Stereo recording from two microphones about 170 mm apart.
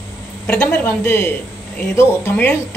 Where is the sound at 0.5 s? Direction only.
10° left (ahead or behind).